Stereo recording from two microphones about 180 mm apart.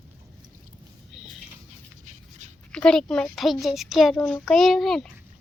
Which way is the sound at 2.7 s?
5° left (ahead or behind).